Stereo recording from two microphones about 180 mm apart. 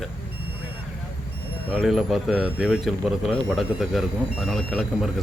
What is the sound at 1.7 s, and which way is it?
Speech, centre (ahead or behind).